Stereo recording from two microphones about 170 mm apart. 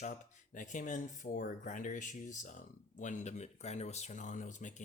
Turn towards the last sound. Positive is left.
turn(degrees=45)  # may be behind; listen again after turning